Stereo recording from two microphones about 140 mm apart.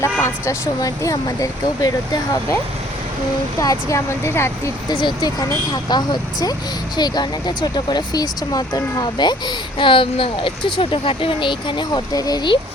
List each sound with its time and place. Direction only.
0.0 s speech: 20° left (ahead or behind)
3.6 s speech: 25° left (ahead or behind)
4.9 s speech: 30° left (ahead or behind)